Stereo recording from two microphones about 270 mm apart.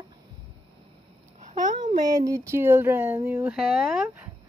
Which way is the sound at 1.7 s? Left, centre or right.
Centre.